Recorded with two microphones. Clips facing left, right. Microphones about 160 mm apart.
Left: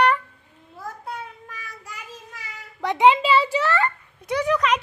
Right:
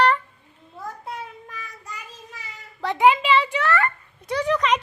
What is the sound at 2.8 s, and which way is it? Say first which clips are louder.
Speech: left 1 dB; 15° left (ahead or behind).